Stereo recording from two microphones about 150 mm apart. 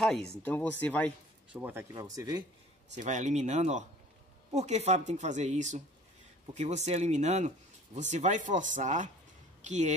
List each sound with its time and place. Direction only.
0.4 s speech: 10° left (ahead or behind)
1.5 s speech: 15° right (ahead or behind)
3.0 s speech: 50° right (ahead or behind)